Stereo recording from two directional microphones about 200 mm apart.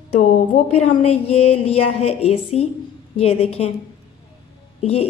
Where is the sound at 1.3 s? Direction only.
30° left (ahead or behind).